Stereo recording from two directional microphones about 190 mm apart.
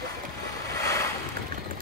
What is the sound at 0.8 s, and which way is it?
Boat, 15° left (ahead or behind).